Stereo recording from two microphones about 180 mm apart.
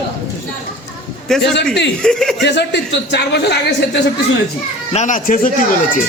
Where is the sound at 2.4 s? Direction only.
70° left (ahead or behind).